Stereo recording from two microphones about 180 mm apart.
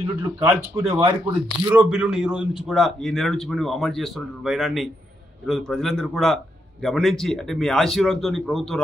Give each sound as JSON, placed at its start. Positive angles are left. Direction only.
{"t": 0.2, "sound": "speech", "side_deg": -15}
{"t": 1.7, "sound": "a man's voice", "side_deg": -5}